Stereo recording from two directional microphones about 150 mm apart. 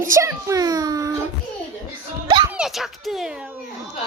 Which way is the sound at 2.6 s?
Centre (ahead or behind).